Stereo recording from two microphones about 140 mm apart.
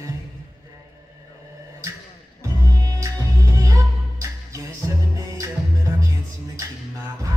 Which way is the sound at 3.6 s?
20° right (ahead or behind).